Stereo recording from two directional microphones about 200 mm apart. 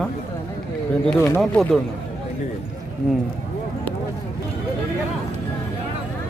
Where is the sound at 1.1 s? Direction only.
15° left (ahead or behind).